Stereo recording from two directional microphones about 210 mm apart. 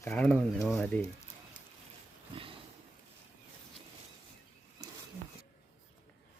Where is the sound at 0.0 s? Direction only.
5° left (ahead or behind).